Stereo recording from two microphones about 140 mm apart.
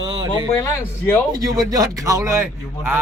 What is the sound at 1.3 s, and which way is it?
A man's voice, 25° right (ahead or behind).